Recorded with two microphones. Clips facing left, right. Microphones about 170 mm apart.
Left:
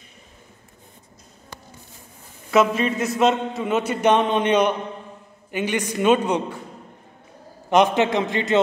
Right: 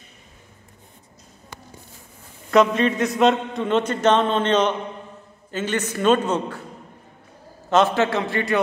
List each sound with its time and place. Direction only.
2.5 s a man's voice: 5° left (ahead or behind)
7.7 s a man's voice: 15° left (ahead or behind)